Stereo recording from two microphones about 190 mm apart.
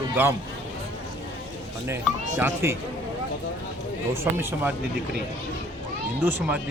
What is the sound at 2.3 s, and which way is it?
Speech, 10° right (ahead or behind).